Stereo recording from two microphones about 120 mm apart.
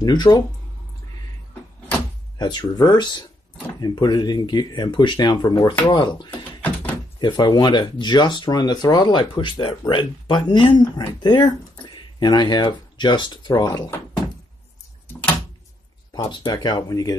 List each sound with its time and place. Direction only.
0.0 s speech: 35° left (ahead or behind)
2.3 s speech: 35° left (ahead or behind)
6.6 s door: 15° left (ahead or behind)
7.2 s speech: 40° left (ahead or behind)
16.3 s speech: 40° left (ahead or behind)